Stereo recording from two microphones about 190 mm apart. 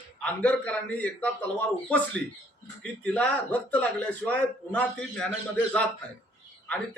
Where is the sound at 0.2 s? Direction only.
5° left (ahead or behind).